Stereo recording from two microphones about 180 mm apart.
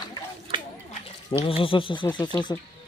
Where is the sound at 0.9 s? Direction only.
30° left (ahead or behind).